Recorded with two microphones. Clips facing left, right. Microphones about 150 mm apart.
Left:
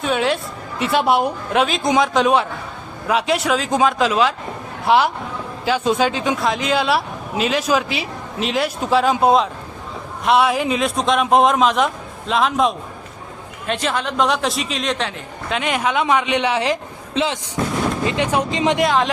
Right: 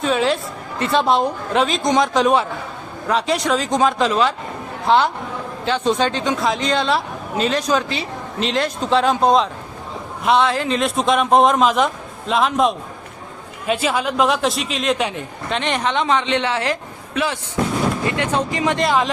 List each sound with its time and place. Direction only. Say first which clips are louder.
0.0 s a sound: right 1 dB; centre (ahead or behind)
0.8 s speech: even; 5° left (ahead or behind)
10.8 s speech: right 1 dB; centre (ahead or behind); by 18.8 s 20° left (ahead or behind)
18.8 s speech: right 1 dB; centre (ahead or behind)